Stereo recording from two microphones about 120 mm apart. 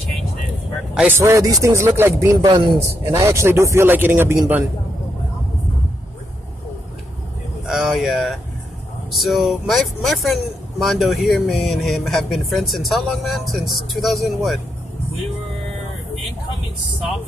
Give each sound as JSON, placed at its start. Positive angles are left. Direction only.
{"t": 0.9, "sound": "speech", "side_deg": -15}
{"t": 2.4, "sound": "speech", "side_deg": -40}
{"t": 3.0, "sound": "speech", "side_deg": -25}
{"t": 7.6, "sound": "speech", "side_deg": -5}